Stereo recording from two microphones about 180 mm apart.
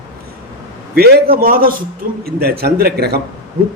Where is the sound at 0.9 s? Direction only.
60° right (ahead or behind).